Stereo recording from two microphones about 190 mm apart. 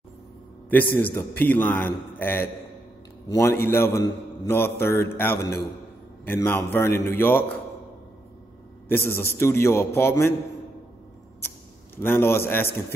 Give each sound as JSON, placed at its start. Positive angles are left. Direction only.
{"t": 0.7, "sound": "mantra", "side_deg": 10}
{"t": 8.8, "sound": "mantra", "side_deg": 10}
{"t": 12.0, "sound": "mantra", "side_deg": 10}